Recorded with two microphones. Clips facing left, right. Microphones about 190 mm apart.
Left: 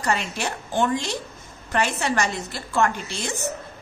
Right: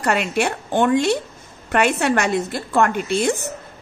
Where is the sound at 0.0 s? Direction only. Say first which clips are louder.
Right 6 dB; 65° right (ahead or behind).